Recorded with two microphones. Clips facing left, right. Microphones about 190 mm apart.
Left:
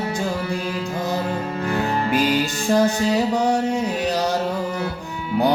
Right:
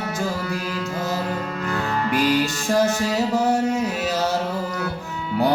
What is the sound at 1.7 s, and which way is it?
Music, 20° left (ahead or behind).